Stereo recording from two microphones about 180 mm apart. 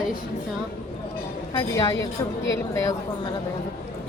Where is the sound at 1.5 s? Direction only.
20° left (ahead or behind).